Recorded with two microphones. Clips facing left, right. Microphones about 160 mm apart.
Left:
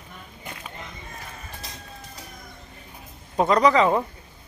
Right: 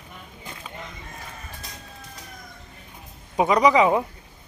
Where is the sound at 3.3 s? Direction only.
10° right (ahead or behind).